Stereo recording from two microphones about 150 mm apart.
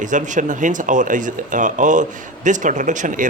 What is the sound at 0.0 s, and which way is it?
A man's voice, 55° right (ahead or behind).